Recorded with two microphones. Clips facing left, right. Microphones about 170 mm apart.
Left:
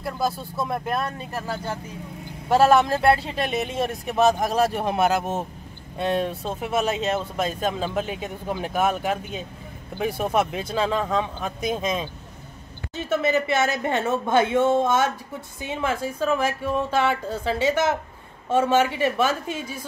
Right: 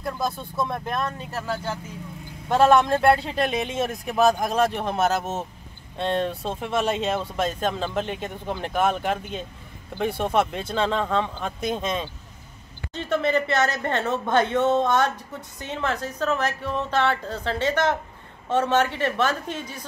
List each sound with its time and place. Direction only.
0.0 s speech: 5° left (ahead or behind)
2.5 s speech: 5° left (ahead or behind)